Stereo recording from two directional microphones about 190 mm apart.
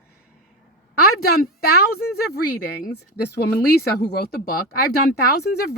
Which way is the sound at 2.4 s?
55° left (ahead or behind).